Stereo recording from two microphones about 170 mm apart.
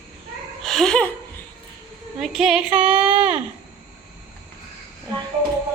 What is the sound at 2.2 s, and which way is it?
A woman's voice, 5° right (ahead or behind).